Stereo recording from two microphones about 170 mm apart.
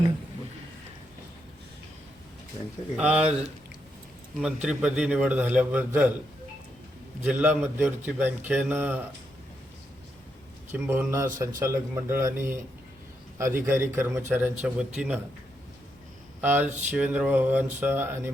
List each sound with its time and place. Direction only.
2.9 s a man's voice: 5° right (ahead or behind)
7.3 s a man's voice: 10° right (ahead or behind)
10.7 s a man's voice: 15° right (ahead or behind)
16.4 s a man's voice: 10° right (ahead or behind)